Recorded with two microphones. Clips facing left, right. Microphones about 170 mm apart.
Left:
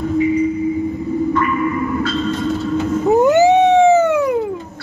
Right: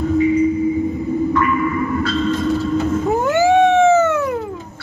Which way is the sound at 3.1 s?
20° left (ahead or behind).